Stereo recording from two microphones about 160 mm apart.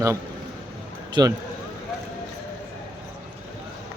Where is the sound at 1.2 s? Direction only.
25° right (ahead or behind).